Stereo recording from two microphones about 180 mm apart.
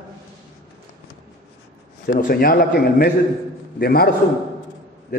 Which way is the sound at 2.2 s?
55° left (ahead or behind).